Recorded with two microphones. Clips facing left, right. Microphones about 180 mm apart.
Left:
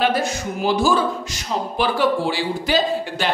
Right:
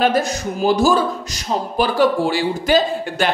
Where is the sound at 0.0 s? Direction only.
45° right (ahead or behind).